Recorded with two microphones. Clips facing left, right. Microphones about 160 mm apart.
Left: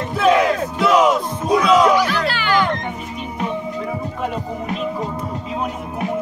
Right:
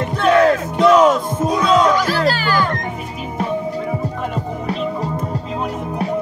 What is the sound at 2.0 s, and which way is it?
Music, 40° right (ahead or behind).